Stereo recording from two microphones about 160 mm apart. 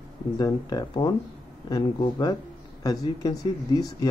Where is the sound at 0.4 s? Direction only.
25° left (ahead or behind).